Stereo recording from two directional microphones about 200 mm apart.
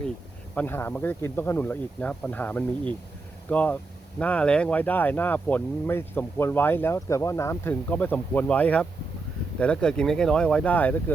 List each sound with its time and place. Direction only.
0.5 s speech: 10° left (ahead or behind)